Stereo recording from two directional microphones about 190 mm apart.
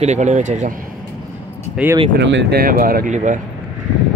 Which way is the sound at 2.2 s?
70° right (ahead or behind).